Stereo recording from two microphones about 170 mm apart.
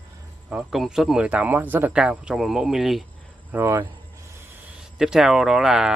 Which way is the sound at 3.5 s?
10° right (ahead or behind).